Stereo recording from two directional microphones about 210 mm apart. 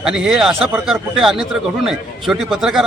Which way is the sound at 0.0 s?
5° right (ahead or behind).